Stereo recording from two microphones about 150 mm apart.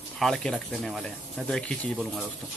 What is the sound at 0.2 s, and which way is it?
Speech, 5° left (ahead or behind).